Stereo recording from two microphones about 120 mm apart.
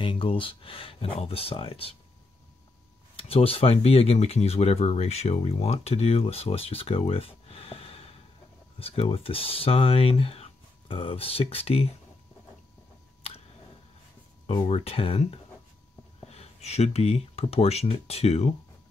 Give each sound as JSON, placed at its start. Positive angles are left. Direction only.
{"t": 0.0, "sound": "speech", "side_deg": 50}
{"t": 3.2, "sound": "speech", "side_deg": 55}
{"t": 14.7, "sound": "speech", "side_deg": 55}